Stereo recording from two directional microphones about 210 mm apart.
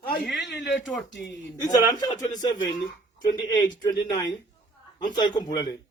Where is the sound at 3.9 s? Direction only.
20° left (ahead or behind).